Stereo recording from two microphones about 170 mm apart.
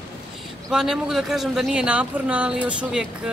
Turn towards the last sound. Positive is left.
turn(degrees=-5)  # may be behind; listen again after turning